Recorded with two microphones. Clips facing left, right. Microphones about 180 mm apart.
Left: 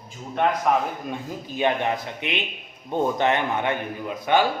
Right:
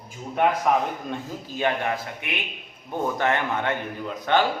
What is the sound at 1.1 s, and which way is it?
A man's voice, 15° left (ahead or behind).